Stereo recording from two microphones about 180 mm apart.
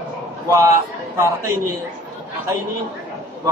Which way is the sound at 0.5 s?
15° right (ahead or behind).